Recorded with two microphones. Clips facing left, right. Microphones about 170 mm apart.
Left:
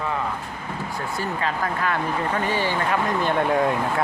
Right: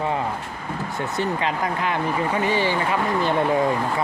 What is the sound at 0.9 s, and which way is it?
Speech, 25° right (ahead or behind).